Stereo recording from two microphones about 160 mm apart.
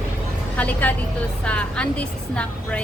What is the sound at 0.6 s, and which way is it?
A woman's voice, 10° left (ahead or behind).